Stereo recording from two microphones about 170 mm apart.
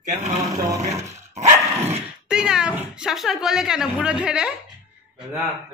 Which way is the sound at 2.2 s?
5° right (ahead or behind).